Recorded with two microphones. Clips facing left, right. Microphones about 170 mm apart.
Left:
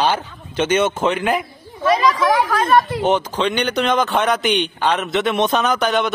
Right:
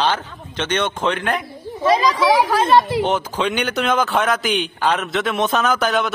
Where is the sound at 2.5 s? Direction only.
25° right (ahead or behind).